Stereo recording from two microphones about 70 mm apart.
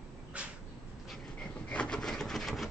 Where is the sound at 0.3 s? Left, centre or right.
Centre.